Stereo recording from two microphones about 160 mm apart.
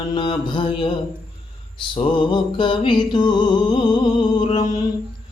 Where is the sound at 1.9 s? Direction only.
30° left (ahead or behind).